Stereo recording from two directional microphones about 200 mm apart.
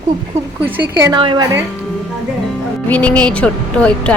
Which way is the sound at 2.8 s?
10° left (ahead or behind).